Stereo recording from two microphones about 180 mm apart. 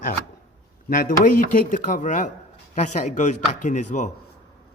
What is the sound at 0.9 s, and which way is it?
A man's voice, 50° left (ahead or behind).